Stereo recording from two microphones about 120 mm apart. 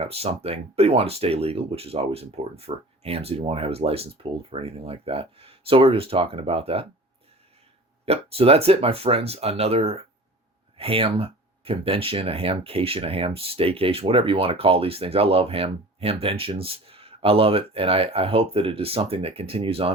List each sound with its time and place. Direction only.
0.0 s speech: 55° right (ahead or behind)
8.0 s speech: 55° right (ahead or behind)